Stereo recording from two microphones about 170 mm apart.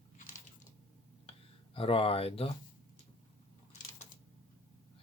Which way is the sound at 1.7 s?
35° left (ahead or behind).